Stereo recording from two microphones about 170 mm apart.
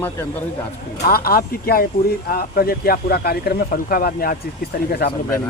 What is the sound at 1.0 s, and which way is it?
Speech, 60° left (ahead or behind).